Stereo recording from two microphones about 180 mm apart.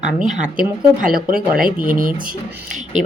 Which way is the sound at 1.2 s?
50° right (ahead or behind).